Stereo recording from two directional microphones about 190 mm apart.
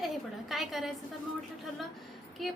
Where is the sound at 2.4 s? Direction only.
Centre (ahead or behind).